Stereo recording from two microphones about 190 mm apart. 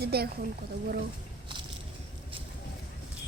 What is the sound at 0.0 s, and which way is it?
Speech, 55° right (ahead or behind).